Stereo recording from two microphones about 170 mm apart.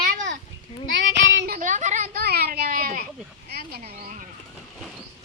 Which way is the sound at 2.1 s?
65° right (ahead or behind).